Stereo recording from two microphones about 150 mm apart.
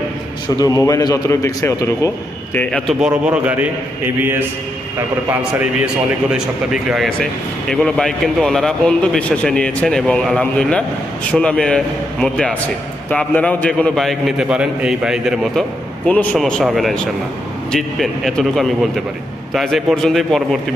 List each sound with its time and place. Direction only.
0.6 s a man's voice: 20° left (ahead or behind)
2.6 s speech: 5° left (ahead or behind)
3.0 s a man's voice: 10° right (ahead or behind)
16.1 s a man's voice: 5° left (ahead or behind)